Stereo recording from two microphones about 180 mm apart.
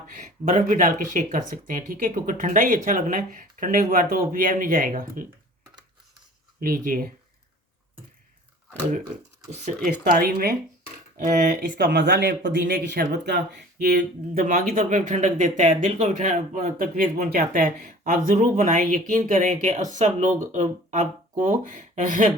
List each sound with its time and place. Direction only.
0.1 s speech: 45° right (ahead or behind)
6.6 s speech: 50° right (ahead or behind)
9.1 s speech: 40° right (ahead or behind)
9.6 s speech: 55° right (ahead or behind)
11.2 s speech: 45° right (ahead or behind)
11.9 s speech: 65° right (ahead or behind); by 22.3 s 45° right (ahead or behind)